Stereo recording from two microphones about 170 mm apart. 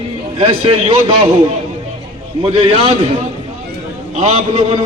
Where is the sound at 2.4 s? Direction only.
30° right (ahead or behind).